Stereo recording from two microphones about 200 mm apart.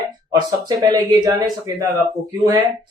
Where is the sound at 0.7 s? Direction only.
20° right (ahead or behind).